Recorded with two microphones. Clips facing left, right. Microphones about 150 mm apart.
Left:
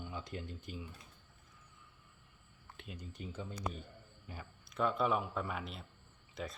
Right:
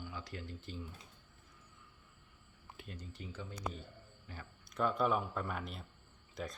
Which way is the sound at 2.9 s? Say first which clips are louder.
Left 3 dB; 20° left (ahead or behind).